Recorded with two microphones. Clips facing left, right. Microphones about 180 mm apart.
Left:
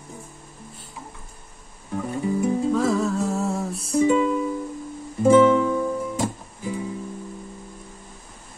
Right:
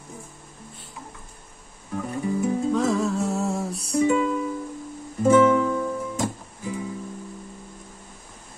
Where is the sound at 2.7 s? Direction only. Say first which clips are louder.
Left 1 dB; centre (ahead or behind).